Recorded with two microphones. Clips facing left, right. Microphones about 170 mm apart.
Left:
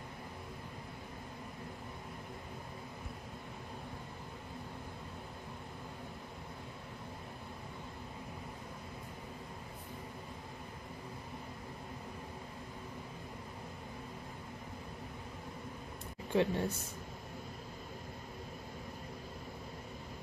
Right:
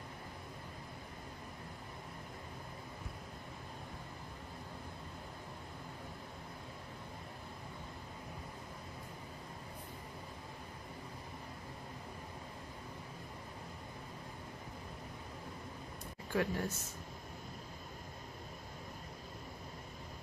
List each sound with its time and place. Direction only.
16.3 s speech: 25° left (ahead or behind)